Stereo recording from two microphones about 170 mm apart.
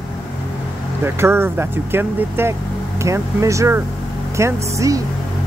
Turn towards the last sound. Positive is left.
turn(degrees=-20)  # may be behind; listen again after turning